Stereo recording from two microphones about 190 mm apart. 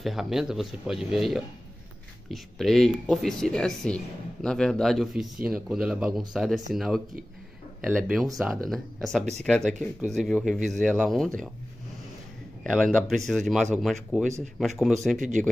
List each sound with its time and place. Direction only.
0.0 s speech: centre (ahead or behind)
12.6 s speech: 5° left (ahead or behind)
15.1 s speech: 40° right (ahead or behind)